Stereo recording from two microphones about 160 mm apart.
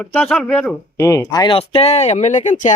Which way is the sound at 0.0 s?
10° left (ahead or behind).